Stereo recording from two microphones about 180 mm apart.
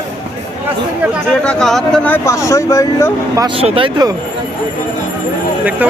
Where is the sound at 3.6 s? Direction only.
30° right (ahead or behind).